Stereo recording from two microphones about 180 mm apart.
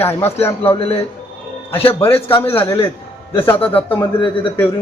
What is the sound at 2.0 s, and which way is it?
Speech, 15° left (ahead or behind).